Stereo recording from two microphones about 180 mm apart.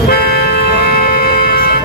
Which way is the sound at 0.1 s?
60° left (ahead or behind).